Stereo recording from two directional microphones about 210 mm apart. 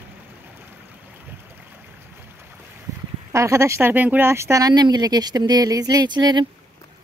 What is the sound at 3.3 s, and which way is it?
Speech, 15° right (ahead or behind).